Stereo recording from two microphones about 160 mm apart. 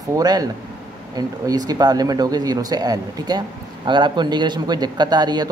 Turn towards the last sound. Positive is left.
turn(degrees=-25)  # may be behind; listen again after turning